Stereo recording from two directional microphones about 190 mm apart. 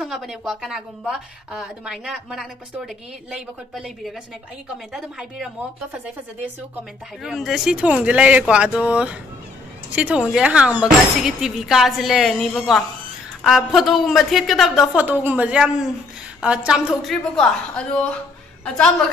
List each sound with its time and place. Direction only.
0.0 s speech: centre (ahead or behind)
7.2 s speech: centre (ahead or behind)